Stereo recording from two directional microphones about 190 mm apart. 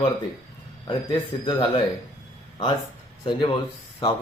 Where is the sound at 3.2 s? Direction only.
25° left (ahead or behind).